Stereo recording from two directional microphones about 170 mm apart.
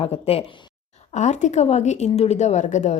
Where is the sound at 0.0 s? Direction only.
35° left (ahead or behind).